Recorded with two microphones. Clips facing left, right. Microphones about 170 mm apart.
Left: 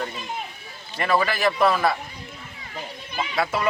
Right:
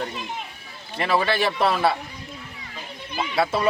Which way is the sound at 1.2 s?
30° right (ahead or behind).